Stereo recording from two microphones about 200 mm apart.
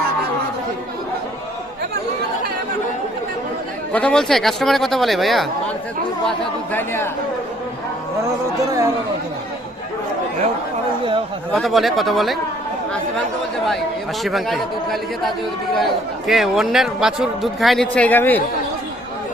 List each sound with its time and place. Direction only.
3.9 s a man's voice: 5° left (ahead or behind)
6.7 s speech: 10° left (ahead or behind)
11.5 s a man's voice: centre (ahead or behind)
14.3 s a man's voice: centre (ahead or behind)